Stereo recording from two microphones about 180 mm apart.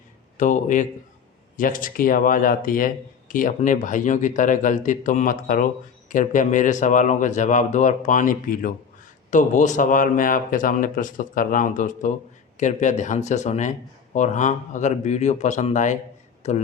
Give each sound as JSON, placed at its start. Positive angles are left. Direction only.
{"t": 0.3, "sound": "speech", "side_deg": 45}